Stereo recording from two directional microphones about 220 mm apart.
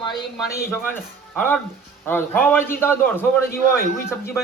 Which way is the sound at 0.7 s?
10° left (ahead or behind).